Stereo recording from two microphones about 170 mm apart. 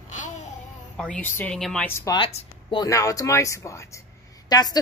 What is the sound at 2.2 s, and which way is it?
Speech, 40° left (ahead or behind).